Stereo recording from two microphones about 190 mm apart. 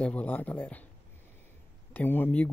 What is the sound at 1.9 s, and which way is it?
Speech, 10° left (ahead or behind).